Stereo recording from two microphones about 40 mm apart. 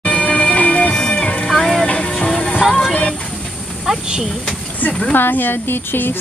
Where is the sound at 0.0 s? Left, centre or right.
Left.